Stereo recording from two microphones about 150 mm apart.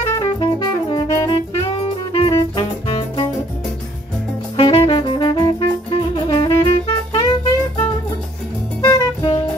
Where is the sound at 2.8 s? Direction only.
35° left (ahead or behind).